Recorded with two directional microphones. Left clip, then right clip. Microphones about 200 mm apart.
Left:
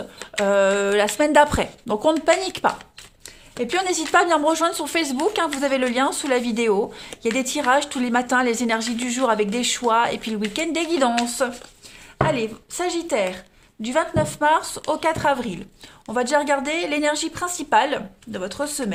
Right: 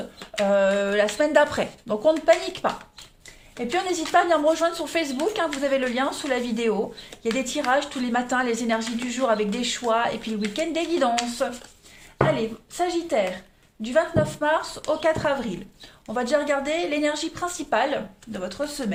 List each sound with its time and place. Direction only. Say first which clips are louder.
0.4 s speech: left 2 dB; 50° left (ahead or behind)